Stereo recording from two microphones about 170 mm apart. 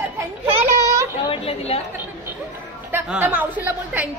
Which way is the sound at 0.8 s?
20° right (ahead or behind).